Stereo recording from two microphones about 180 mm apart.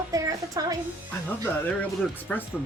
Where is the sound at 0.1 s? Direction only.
20° right (ahead or behind).